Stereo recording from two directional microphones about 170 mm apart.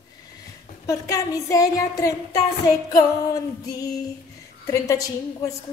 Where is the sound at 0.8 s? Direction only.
20° left (ahead or behind).